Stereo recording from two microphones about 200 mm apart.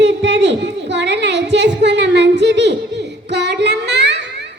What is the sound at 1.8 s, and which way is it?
Speech, 60° right (ahead or behind).